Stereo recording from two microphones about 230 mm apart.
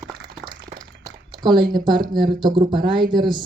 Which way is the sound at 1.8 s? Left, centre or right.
Centre.